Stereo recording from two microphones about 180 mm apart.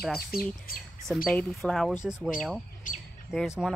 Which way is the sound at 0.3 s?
55° left (ahead or behind).